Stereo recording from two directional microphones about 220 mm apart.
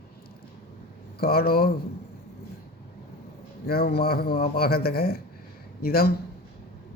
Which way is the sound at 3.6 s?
45° left (ahead or behind).